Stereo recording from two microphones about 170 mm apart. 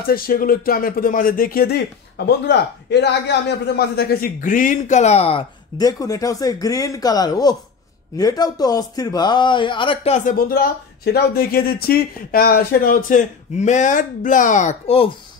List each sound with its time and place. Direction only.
0.0 s speech: 60° left (ahead or behind); by 5.4 s 35° left (ahead or behind)
5.8 s a man's voice: 20° left (ahead or behind)
10.1 s speech: 55° left (ahead or behind); by 15.0 s 40° left (ahead or behind)